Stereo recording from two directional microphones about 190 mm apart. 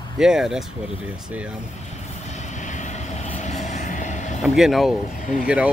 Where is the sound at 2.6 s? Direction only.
40° left (ahead or behind).